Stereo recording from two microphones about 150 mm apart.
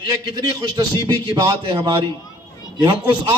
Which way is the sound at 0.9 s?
30° right (ahead or behind).